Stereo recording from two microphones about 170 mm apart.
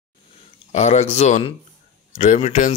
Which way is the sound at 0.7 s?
40° left (ahead or behind).